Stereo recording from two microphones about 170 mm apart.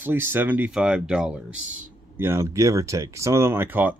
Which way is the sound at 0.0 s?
15° right (ahead or behind).